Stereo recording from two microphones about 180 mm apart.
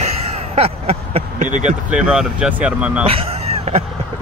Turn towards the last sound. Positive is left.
turn(degrees=-35)  # may be behind; listen again after turning